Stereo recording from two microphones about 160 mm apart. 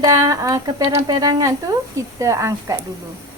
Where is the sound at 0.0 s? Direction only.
20° right (ahead or behind).